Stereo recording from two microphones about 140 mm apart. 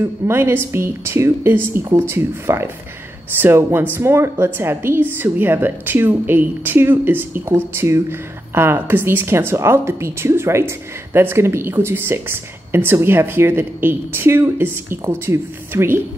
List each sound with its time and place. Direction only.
0.0 s a woman's voice: 15° right (ahead or behind)